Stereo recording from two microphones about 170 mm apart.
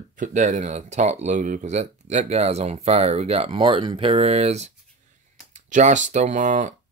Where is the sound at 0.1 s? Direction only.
50° right (ahead or behind).